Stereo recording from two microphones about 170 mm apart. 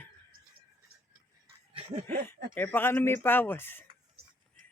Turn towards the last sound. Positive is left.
turn(degrees=10)  # may be behind; listen again after turning